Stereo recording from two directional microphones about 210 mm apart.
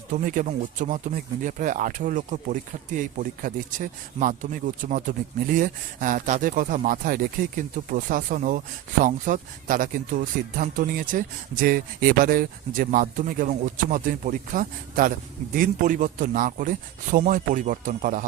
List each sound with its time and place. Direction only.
0.1 s speech: 35° right (ahead or behind)